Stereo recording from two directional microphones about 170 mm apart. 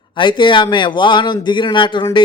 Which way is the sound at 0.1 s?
30° left (ahead or behind).